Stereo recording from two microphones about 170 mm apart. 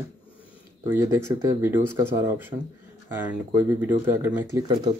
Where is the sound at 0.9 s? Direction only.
15° right (ahead or behind).